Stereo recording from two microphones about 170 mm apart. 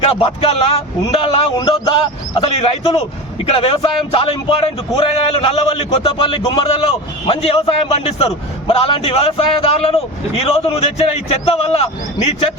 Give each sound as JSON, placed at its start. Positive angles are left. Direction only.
{"t": 0.0, "sound": "a man's voice", "side_deg": 30}